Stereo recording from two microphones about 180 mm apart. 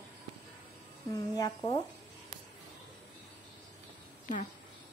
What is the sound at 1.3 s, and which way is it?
Speech, 20° left (ahead or behind).